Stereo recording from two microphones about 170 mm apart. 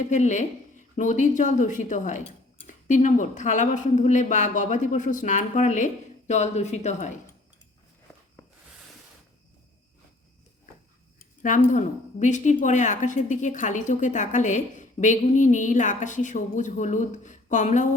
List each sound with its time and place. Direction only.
0.0 s a woman's voice: 45° left (ahead or behind)
11.4 s a woman's voice: 50° left (ahead or behind)